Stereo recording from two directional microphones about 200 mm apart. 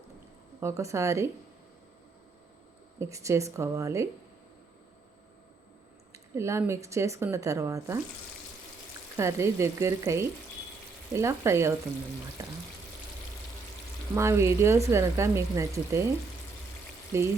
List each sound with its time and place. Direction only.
0.6 s speech: 15° right (ahead or behind)
3.0 s speech: 15° right (ahead or behind)
6.3 s speech: 15° right (ahead or behind)
9.1 s speech: 15° right (ahead or behind)
14.2 s speech: 15° right (ahead or behind)
17.1 s speech: 15° right (ahead or behind)